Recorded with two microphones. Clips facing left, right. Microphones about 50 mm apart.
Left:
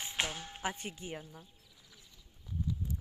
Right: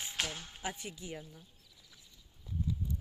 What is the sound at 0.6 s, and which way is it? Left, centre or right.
Speech, left.